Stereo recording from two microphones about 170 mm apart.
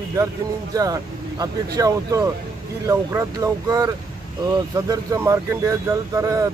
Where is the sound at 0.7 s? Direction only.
20° right (ahead or behind).